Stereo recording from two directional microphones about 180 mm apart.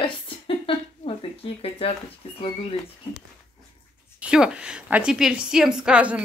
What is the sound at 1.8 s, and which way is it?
Speech, 30° left (ahead or behind).